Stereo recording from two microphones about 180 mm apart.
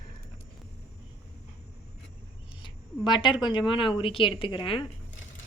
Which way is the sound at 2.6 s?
25° left (ahead or behind).